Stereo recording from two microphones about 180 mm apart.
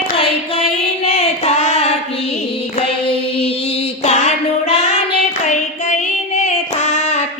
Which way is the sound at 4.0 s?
35° left (ahead or behind).